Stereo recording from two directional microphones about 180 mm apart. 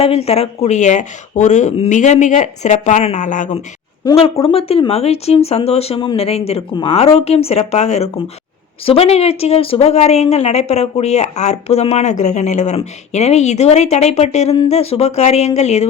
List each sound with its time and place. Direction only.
0.0 s speech: 35° left (ahead or behind)
4.2 s speech: 30° left (ahead or behind)